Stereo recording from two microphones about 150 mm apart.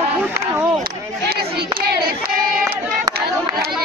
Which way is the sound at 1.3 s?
90° right.